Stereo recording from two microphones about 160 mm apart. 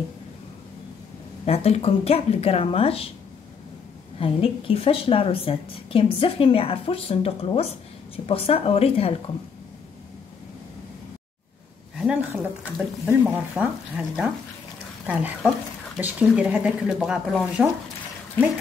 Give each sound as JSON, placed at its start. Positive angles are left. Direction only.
{"t": 1.4, "sound": "a woman's voice", "side_deg": 40}
{"t": 4.2, "sound": "a woman's voice", "side_deg": 35}
{"t": 12.0, "sound": "speech", "side_deg": -10}